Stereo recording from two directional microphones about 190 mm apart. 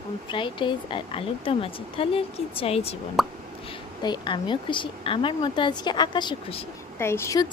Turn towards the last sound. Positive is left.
turn(degrees=15)  # may be behind; listen again after turning